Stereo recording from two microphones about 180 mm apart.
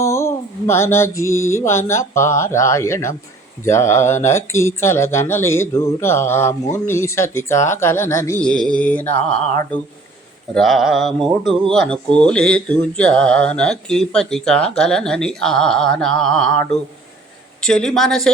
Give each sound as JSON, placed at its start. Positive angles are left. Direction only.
{"t": 0.0, "sound": "mantra", "side_deg": 15}
{"t": 1.9, "sound": "speech", "side_deg": 15}
{"t": 10.5, "sound": "speech", "side_deg": 0}